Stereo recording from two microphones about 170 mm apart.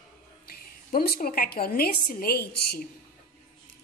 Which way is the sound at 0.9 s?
60° left (ahead or behind).